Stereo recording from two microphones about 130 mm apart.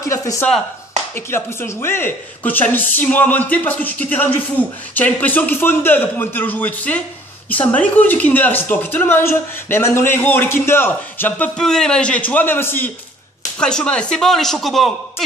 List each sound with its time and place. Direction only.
0.0 s speech: 25° left (ahead or behind); by 15.2 s centre (ahead or behind)